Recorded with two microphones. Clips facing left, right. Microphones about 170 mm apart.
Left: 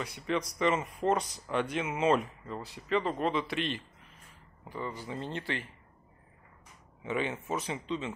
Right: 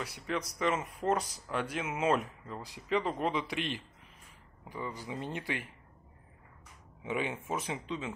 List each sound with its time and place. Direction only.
0.0 s speech: 5° right (ahead or behind)
5.0 s speech: 10° right (ahead or behind)
7.0 s speech: 5° right (ahead or behind)